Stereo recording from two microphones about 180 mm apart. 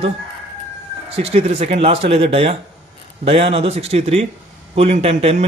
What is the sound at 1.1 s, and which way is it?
A man's voice, 35° right (ahead or behind).